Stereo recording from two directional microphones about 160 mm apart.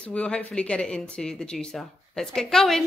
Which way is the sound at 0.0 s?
10° left (ahead or behind).